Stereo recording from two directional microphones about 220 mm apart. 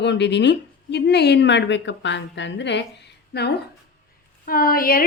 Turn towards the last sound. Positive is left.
turn(degrees=40)  # may be behind; listen again after turning